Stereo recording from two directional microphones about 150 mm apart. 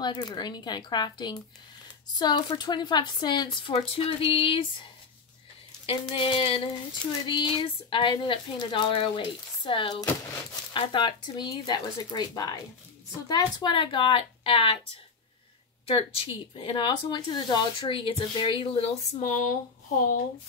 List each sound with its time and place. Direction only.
0.0 s speech: 30° left (ahead or behind)
5.9 s speech: 35° left (ahead or behind)
15.9 s speech: 40° left (ahead or behind)
19.3 s speech: 60° left (ahead or behind)